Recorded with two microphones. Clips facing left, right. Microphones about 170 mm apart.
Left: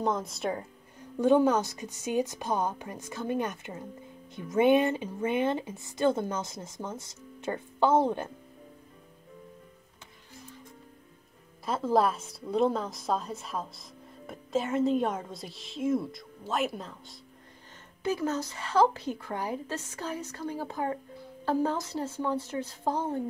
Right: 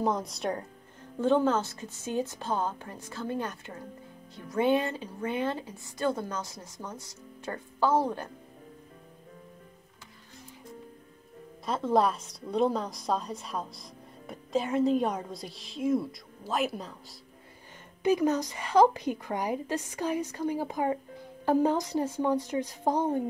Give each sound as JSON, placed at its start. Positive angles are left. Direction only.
{"t": 0.0, "sound": "a woman's voice", "side_deg": 0}
{"t": 1.2, "sound": "a woman's voice", "side_deg": 15}
{"t": 11.6, "sound": "a woman's voice", "side_deg": 5}
{"t": 18.0, "sound": "a woman's voice", "side_deg": -15}